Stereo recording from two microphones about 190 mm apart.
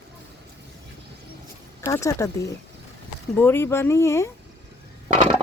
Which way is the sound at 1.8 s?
15° left (ahead or behind).